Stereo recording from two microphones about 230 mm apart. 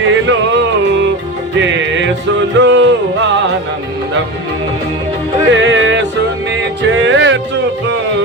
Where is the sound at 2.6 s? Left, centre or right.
Right.